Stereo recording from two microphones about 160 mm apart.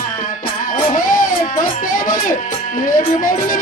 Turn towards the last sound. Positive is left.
turn(degrees=60)  # may be behind; listen again after turning